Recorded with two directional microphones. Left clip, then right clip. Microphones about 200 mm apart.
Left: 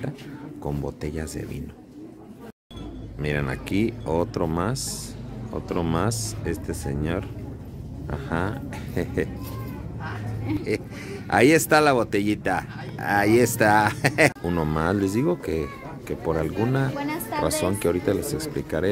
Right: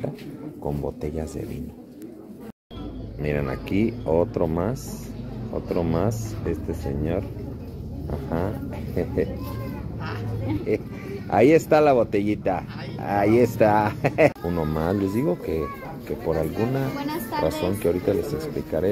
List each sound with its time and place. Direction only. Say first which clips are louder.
1.0 s speech: right 2 dB; 20° left (ahead or behind)
3.2 s speech: right 1 dB; 20° left (ahead or behind)
11.2 s speech: right 1 dB; 25° left (ahead or behind)
14.5 s speech: left 1 dB; 35° left (ahead or behind)